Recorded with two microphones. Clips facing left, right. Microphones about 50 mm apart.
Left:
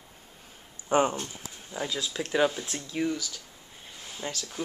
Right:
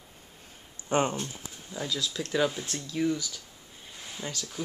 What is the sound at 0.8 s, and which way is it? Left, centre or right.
Speech, centre.